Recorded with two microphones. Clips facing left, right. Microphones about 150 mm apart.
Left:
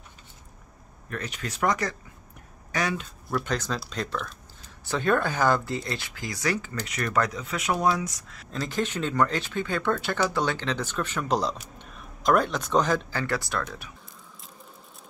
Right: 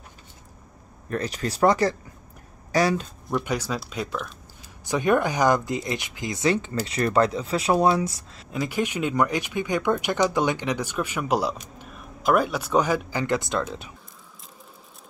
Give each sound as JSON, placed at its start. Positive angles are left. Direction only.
{"t": 1.1, "sound": "speech", "side_deg": -35}
{"t": 3.3, "sound": "speech", "side_deg": -10}
{"t": 4.8, "sound": "speech", "side_deg": -15}
{"t": 8.5, "sound": "speech", "side_deg": -10}